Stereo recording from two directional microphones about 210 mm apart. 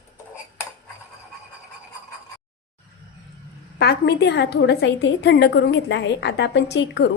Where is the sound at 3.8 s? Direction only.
50° left (ahead or behind).